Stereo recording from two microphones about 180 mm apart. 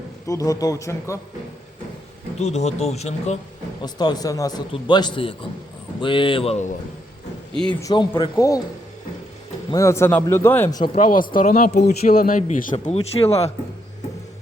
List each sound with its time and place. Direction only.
0.3 s a man's voice: 20° left (ahead or behind)
2.4 s speech: 40° left (ahead or behind)
3.8 s a man's voice: 25° left (ahead or behind); by 6.7 s 40° left (ahead or behind)
7.7 s speech: 20° left (ahead or behind)
9.7 s speech: 15° left (ahead or behind)
10.9 s speech: 50° left (ahead or behind); by 13.5 s 35° left (ahead or behind)